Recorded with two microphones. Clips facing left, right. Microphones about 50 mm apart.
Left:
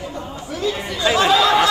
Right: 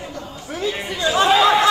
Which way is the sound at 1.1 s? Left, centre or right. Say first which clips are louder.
Right 1 dB; right.